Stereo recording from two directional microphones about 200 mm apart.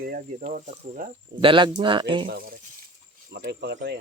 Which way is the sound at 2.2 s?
45° right (ahead or behind).